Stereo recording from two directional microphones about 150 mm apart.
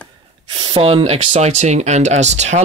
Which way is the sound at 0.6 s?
35° right (ahead or behind).